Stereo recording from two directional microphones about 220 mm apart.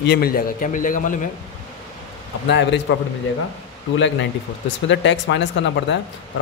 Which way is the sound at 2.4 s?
55° left (ahead or behind).